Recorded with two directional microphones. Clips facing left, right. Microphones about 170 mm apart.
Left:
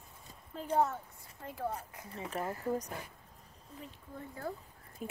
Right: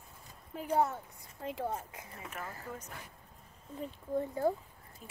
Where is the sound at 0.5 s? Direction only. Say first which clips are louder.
Even; 10° right (ahead or behind).